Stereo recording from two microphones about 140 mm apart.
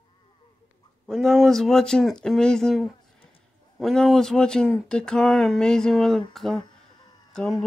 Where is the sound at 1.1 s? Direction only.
Centre (ahead or behind).